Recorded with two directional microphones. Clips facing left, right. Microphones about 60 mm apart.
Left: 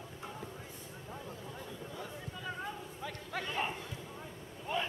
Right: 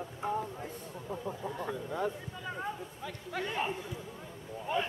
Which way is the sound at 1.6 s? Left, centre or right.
Right.